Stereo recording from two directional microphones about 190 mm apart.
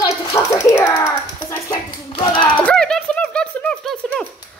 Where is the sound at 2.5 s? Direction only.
5° left (ahead or behind).